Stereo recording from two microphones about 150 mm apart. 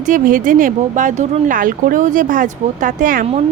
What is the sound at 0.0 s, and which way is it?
Speech, 60° right (ahead or behind).